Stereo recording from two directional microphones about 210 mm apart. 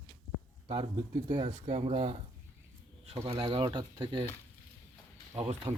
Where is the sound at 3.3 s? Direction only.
20° right (ahead or behind).